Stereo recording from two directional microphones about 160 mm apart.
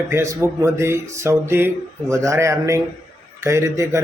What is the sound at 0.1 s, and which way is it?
Speech, 15° right (ahead or behind).